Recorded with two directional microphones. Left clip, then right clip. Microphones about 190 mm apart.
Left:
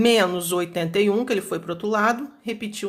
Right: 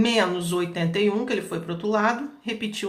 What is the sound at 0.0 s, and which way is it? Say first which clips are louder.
Speech: left 4 dB; 45° left (ahead or behind).